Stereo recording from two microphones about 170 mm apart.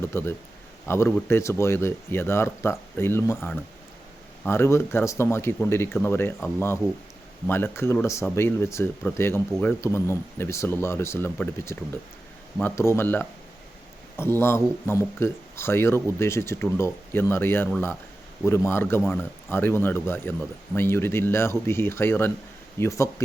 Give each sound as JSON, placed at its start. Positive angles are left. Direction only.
{"t": 0.0, "sound": "speech", "side_deg": 15}
{"t": 7.4, "sound": "speech", "side_deg": 15}